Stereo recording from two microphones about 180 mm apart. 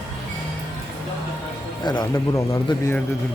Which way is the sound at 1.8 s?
20° left (ahead or behind).